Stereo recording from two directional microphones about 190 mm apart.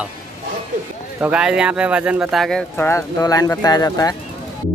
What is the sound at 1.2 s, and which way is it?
Speech, 5° right (ahead or behind).